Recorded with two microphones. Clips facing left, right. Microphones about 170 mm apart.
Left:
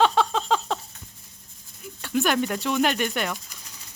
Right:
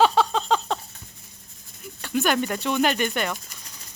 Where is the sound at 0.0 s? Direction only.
Centre (ahead or behind).